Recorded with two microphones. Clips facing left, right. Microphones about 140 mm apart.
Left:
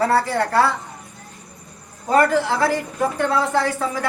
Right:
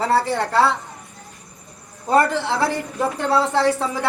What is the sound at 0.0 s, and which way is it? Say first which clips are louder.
Speech: left 1 dB; 25° right (ahead or behind).